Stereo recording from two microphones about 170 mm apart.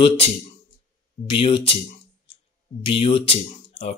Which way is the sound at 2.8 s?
30° left (ahead or behind).